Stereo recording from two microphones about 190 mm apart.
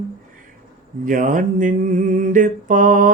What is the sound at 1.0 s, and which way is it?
Mantra, 45° right (ahead or behind).